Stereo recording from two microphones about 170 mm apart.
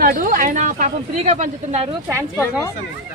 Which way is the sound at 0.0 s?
55° right (ahead or behind).